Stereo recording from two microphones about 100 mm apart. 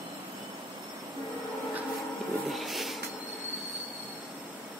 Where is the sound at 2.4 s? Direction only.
Centre (ahead or behind).